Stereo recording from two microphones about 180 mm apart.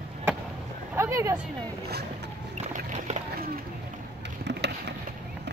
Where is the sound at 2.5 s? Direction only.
40° right (ahead or behind).